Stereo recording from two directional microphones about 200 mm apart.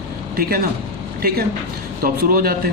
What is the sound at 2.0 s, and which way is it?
Speech, 50° right (ahead or behind).